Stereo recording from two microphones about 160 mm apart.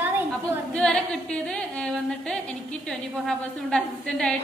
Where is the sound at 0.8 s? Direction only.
5° left (ahead or behind).